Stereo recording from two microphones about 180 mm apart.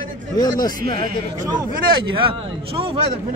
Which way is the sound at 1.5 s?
25° right (ahead or behind).